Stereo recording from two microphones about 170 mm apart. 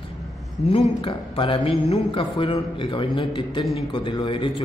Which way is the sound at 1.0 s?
30° left (ahead or behind).